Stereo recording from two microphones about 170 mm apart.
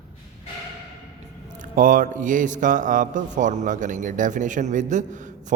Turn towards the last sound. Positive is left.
turn(degrees=-45)  # may be behind; listen again after turning